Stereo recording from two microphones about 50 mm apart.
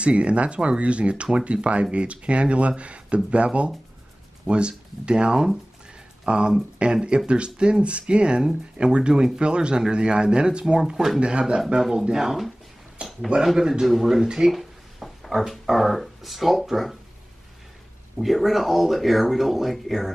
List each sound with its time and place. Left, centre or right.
0.0 s speech: right; by 12.5 s centre
13.0 s a sound: centre
13.6 s speech: centre
14.5 s a sound: centre
15.4 s speech: centre
18.1 s speech: centre